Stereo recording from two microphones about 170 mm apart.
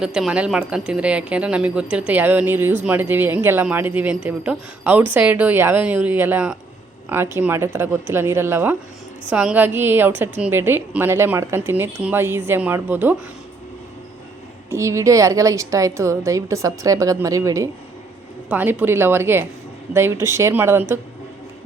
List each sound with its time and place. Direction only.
0.0 s a woman's voice: 5° right (ahead or behind)
14.7 s a woman's voice: 15° right (ahead or behind)